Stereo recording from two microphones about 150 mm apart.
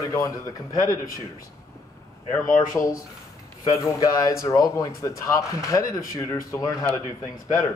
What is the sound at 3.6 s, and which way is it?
Speech, 20° left (ahead or behind).